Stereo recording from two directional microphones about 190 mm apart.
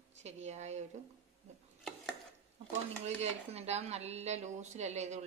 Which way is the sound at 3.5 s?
35° right (ahead or behind).